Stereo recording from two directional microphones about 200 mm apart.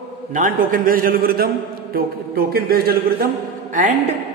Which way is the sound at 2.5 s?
50° right (ahead or behind).